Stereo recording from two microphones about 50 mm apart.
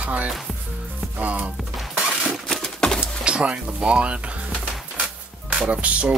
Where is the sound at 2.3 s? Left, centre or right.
Centre.